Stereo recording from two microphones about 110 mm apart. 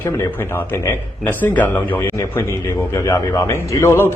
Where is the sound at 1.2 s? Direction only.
15° left (ahead or behind).